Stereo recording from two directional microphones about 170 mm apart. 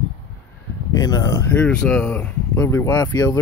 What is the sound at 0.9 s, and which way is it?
Speech, 20° left (ahead or behind).